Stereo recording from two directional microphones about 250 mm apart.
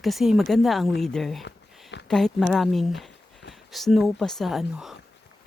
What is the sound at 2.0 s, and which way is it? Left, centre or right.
Speech, centre.